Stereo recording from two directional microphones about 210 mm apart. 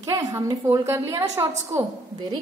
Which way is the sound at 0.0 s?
15° right (ahead or behind).